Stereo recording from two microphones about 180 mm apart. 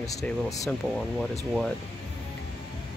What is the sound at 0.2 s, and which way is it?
Speech, 10° left (ahead or behind).